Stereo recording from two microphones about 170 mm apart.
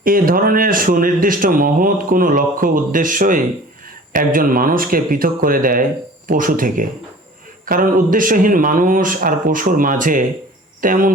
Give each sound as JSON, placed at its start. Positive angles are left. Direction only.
{"t": 0.0, "sound": "a man's voice", "side_deg": -55}